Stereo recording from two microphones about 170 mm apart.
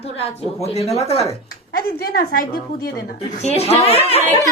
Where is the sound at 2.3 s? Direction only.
60° left (ahead or behind).